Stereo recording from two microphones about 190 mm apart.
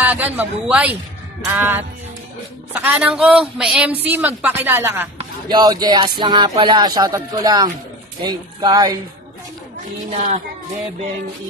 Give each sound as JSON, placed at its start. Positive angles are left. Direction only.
{"t": 0.0, "sound": "a woman's voice", "side_deg": -10}